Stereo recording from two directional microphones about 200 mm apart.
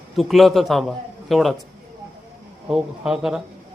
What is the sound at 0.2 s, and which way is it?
A man's voice, centre (ahead or behind).